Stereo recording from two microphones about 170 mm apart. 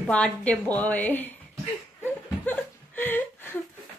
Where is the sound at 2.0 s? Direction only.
10° left (ahead or behind).